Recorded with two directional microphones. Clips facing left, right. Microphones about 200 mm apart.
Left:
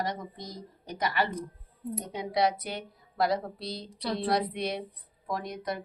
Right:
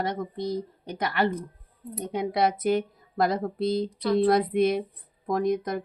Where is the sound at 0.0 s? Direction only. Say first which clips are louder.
Right 6 dB; 60° right (ahead or behind).